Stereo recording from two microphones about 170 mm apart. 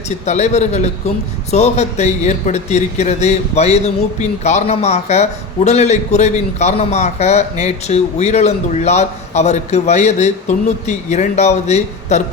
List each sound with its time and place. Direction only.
0.3 s a man's voice: 40° left (ahead or behind)